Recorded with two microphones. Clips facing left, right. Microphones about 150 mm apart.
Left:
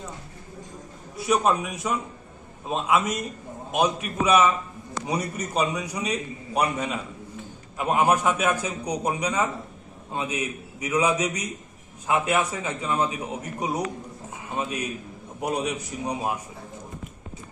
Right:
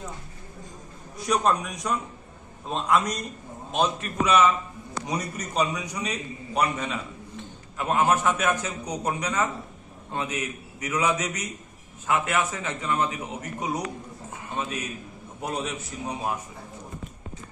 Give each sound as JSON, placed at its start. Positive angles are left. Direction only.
{"t": 1.1, "sound": "a man's voice", "side_deg": 5}
{"t": 14.3, "sound": "a sound", "side_deg": 10}
{"t": 15.4, "sound": "a man's voice", "side_deg": 15}